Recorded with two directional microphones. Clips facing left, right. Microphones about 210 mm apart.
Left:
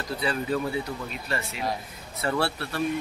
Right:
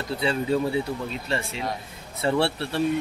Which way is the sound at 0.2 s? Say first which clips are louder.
Right 4 dB; 25° right (ahead or behind).